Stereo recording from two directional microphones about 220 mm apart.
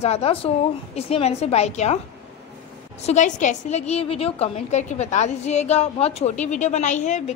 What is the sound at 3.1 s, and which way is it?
A woman's voice, 35° left (ahead or behind).